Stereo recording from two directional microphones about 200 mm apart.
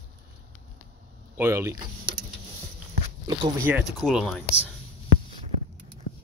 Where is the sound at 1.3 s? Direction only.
10° right (ahead or behind).